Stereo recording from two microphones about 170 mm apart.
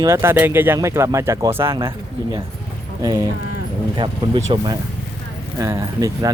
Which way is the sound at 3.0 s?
20° right (ahead or behind).